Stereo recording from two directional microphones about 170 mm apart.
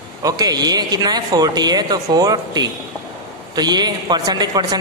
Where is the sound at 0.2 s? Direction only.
20° right (ahead or behind).